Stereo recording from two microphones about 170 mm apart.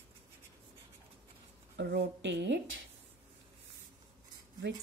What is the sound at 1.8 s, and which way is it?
Speech, 85° right.